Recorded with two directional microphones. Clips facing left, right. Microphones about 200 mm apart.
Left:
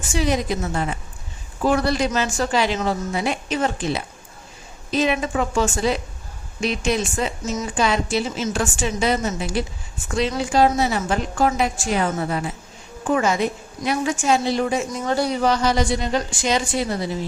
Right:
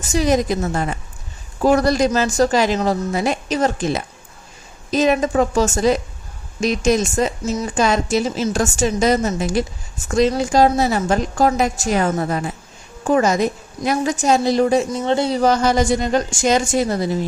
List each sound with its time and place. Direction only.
0.1 s a woman's voice: 45° right (ahead or behind); by 15.4 s 25° right (ahead or behind)
15.4 s speech: 45° right (ahead or behind)